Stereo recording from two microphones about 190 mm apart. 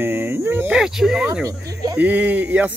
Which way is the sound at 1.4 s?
20° right (ahead or behind).